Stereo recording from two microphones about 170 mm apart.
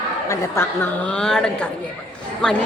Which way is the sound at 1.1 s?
5° left (ahead or behind).